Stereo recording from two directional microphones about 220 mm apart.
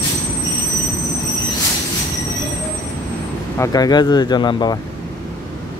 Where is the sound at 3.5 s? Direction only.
15° left (ahead or behind).